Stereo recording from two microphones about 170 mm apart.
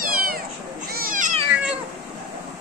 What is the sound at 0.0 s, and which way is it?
Cat, 60° right (ahead or behind).